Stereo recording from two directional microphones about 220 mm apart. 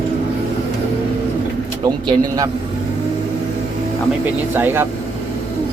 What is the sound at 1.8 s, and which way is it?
Speech, 15° right (ahead or behind).